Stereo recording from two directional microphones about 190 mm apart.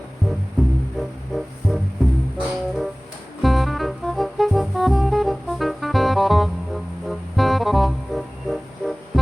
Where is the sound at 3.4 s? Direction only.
Centre (ahead or behind).